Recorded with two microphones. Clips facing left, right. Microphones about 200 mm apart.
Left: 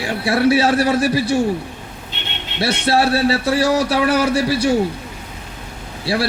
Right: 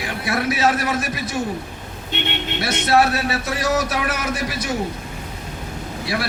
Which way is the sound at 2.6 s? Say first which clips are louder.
Left 1 dB; 30° left (ahead or behind).